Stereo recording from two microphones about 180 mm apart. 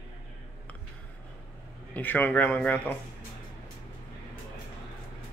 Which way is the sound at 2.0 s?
10° left (ahead or behind).